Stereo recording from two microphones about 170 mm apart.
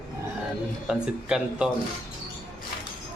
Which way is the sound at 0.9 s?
5° right (ahead or behind).